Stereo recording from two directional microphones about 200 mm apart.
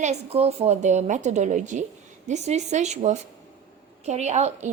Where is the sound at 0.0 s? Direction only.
35° right (ahead or behind).